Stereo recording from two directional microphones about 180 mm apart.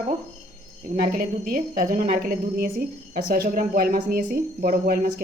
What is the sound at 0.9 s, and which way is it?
A woman's voice, 55° right (ahead or behind).